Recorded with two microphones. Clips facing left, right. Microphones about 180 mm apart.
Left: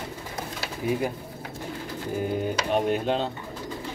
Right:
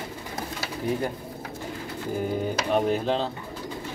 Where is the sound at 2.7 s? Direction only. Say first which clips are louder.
Right 1 dB; centre (ahead or behind).